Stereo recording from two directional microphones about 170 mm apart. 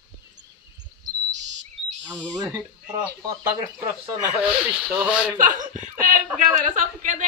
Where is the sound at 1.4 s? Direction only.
90° right.